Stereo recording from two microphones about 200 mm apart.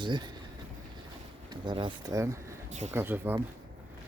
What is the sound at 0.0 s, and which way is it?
Speech, 25° right (ahead or behind).